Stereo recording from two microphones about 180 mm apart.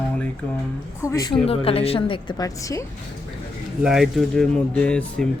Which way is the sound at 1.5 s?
35° left (ahead or behind).